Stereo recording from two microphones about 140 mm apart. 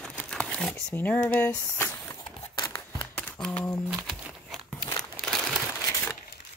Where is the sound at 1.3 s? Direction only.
10° left (ahead or behind).